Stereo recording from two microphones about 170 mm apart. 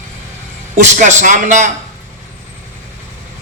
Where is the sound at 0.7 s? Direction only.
45° right (ahead or behind).